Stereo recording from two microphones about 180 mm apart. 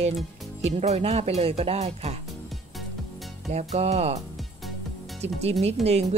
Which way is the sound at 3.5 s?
40° right (ahead or behind).